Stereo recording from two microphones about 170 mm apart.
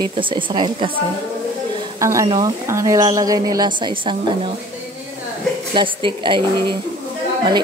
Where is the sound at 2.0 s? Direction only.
20° right (ahead or behind).